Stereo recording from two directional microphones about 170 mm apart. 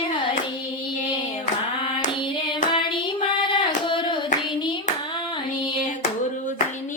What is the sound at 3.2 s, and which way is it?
Child singing, 30° left (ahead or behind).